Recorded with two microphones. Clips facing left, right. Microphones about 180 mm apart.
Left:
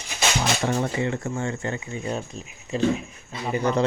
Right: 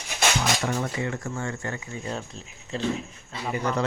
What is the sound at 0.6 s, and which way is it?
Speech, 30° left (ahead or behind).